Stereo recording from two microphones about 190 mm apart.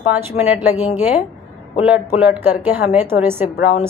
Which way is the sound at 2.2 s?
10° right (ahead or behind).